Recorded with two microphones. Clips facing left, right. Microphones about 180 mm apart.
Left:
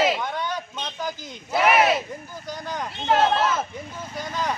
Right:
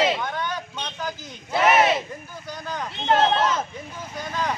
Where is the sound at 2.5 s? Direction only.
15° left (ahead or behind).